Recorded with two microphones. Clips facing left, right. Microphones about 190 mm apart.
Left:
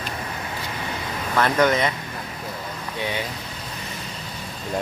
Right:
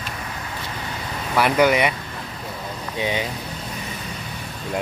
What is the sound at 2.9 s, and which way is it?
Speech, 20° right (ahead or behind).